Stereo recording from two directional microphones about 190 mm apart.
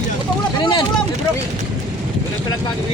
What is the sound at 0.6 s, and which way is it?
Vehicle, 25° left (ahead or behind).